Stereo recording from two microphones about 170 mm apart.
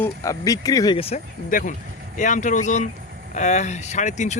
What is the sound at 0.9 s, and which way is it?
Speech, 35° left (ahead or behind).